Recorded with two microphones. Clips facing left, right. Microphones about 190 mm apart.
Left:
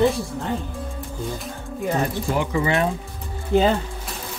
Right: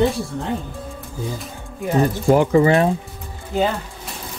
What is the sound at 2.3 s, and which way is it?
Speech, 45° right (ahead or behind).